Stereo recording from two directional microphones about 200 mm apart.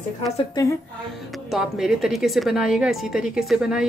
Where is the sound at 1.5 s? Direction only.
Centre (ahead or behind).